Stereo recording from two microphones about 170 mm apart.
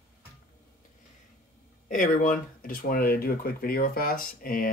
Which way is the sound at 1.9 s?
50° left (ahead or behind).